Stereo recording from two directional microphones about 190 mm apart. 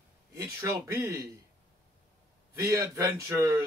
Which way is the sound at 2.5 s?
15° right (ahead or behind).